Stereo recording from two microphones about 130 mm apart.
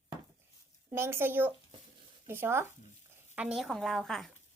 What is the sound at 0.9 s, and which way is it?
Speech, 20° right (ahead or behind).